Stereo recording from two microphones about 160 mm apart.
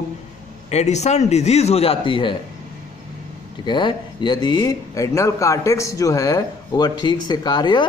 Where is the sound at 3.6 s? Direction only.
30° left (ahead or behind).